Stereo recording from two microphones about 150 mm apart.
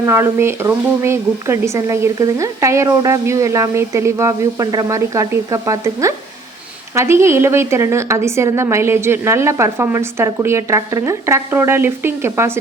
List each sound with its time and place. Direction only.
0.0 s a woman's voice: 20° right (ahead or behind)